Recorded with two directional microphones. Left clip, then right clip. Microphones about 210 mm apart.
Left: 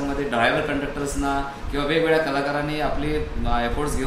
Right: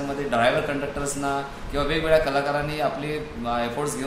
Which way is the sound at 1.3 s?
20° right (ahead or behind).